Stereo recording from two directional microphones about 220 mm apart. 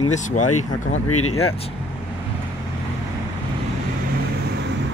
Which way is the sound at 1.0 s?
75° left (ahead or behind).